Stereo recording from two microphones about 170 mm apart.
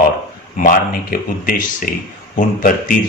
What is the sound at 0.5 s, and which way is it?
A man's voice, 55° left (ahead or behind).